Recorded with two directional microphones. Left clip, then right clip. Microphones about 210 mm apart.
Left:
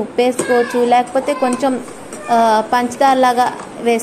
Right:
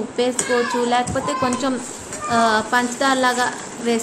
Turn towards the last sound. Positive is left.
turn(degrees=20)  # may be behind; listen again after turning